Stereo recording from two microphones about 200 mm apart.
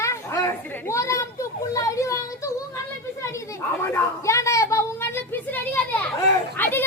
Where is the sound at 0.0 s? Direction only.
15° left (ahead or behind).